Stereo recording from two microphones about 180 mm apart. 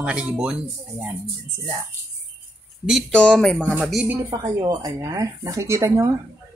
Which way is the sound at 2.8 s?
5° left (ahead or behind).